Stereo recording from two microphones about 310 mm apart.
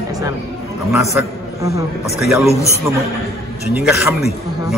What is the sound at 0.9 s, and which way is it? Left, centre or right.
Speech, centre.